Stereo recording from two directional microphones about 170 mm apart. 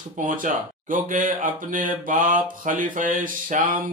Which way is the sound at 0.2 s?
50° right (ahead or behind).